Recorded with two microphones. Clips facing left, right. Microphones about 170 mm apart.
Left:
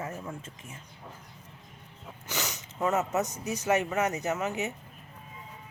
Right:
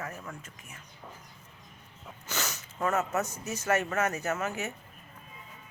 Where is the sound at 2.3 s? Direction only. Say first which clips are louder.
Left 1 dB; 15° left (ahead or behind).